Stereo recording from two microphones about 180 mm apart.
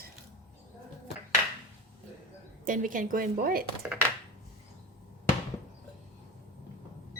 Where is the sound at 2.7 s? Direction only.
50° right (ahead or behind).